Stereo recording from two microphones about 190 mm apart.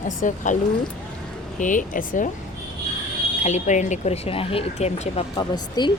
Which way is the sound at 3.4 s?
40° left (ahead or behind).